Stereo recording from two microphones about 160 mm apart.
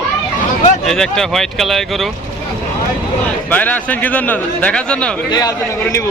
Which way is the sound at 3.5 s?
10° left (ahead or behind).